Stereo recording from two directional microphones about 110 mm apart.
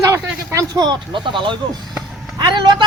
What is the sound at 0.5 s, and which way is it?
A man's voice, 35° right (ahead or behind).